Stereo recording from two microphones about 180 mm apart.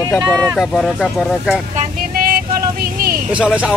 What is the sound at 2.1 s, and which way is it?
Vehicle, 55° right (ahead or behind).